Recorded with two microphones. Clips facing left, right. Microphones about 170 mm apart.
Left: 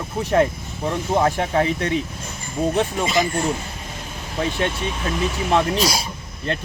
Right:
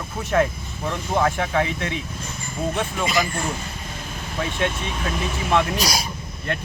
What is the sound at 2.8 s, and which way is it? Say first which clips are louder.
Speech: left 1 dB; 25° left (ahead or behind).